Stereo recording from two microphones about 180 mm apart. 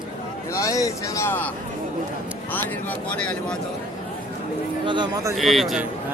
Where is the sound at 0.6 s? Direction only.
20° left (ahead or behind).